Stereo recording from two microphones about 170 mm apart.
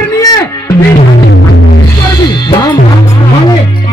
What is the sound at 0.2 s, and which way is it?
Music, 20° left (ahead or behind).